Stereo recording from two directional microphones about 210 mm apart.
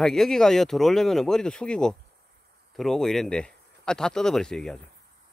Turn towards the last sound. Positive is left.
turn(degrees=0)  # may be behind; listen again after turning